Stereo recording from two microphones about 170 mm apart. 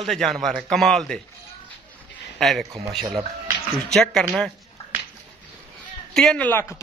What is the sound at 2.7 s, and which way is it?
Speech, 25° right (ahead or behind).